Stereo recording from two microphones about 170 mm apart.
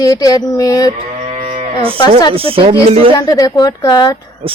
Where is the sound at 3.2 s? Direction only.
20° left (ahead or behind).